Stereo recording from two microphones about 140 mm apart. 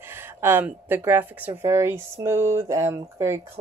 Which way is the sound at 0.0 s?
15° right (ahead or behind).